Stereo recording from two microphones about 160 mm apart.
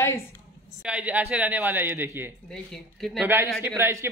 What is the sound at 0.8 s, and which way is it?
Speech, 10° right (ahead or behind).